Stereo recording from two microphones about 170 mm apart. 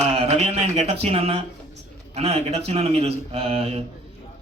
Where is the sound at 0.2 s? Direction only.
40° right (ahead or behind).